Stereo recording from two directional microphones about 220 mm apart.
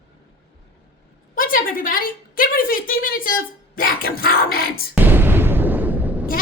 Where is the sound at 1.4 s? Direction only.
40° left (ahead or behind).